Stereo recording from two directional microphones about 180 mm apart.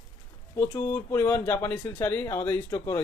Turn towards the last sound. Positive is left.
turn(degrees=15)  # may be behind; listen again after turning